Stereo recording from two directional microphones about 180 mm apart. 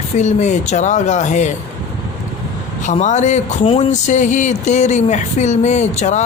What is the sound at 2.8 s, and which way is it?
Speech, 40° left (ahead or behind).